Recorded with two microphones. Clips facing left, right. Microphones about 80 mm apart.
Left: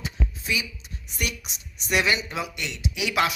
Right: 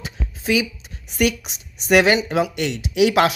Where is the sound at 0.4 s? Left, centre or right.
Right.